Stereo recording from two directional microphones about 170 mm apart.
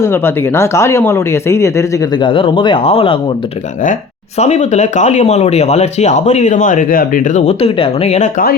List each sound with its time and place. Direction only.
0.0 s speech: 15° left (ahead or behind); by 3.3 s 30° left (ahead or behind)
4.4 s speech: 40° left (ahead or behind)